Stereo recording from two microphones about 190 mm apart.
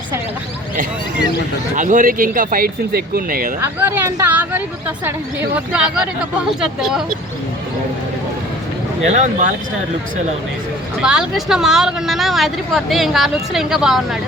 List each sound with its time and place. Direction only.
1.7 s speech: 40° right (ahead or behind)
3.6 s speech: 10° right (ahead or behind)
9.0 s a man's voice: 40° right (ahead or behind)
11.0 s speech: 5° right (ahead or behind)